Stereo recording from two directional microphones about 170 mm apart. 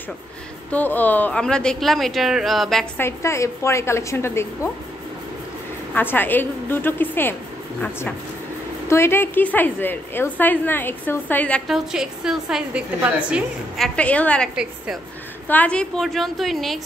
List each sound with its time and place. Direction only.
0.7 s speech: 10° left (ahead or behind)
3.0 s a woman's voice: 15° left (ahead or behind)
5.9 s a woman's voice: 10° left (ahead or behind)
8.8 s a woman's voice: 15° left (ahead or behind)
14.5 s speech: 5° right (ahead or behind)
15.4 s speech: 10° left (ahead or behind)